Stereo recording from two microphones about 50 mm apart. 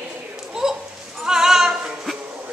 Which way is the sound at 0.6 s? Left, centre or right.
Centre.